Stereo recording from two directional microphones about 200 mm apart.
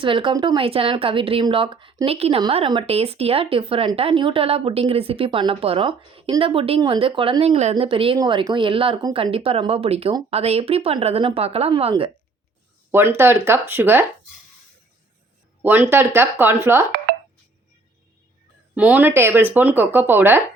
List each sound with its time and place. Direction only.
0.0 s speech: 25° right (ahead or behind)
12.9 s speech: 10° right (ahead or behind)
15.6 s speech: 10° right (ahead or behind)
18.7 s speech: 5° right (ahead or behind)